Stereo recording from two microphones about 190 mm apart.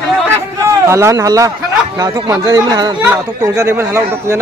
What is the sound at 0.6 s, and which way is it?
A man's voice, 15° right (ahead or behind).